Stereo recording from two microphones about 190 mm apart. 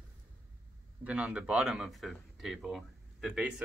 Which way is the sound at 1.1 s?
5° right (ahead or behind).